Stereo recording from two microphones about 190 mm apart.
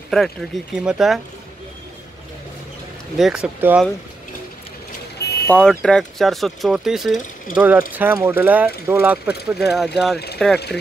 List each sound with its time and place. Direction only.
0.1 s speech: centre (ahead or behind)
3.2 s speech: 5° right (ahead or behind)
5.5 s speech: 5° left (ahead or behind)
10.1 s speech: 60° left (ahead or behind)